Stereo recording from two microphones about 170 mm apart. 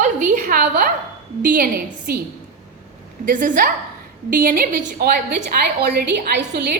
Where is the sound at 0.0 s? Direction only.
50° right (ahead or behind).